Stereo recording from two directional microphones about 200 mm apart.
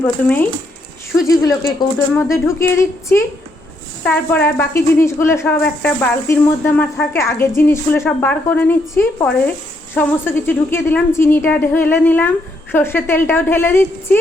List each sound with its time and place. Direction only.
0.0 s speech: 10° left (ahead or behind)